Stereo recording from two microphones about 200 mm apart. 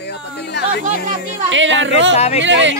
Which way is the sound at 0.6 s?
55° left (ahead or behind).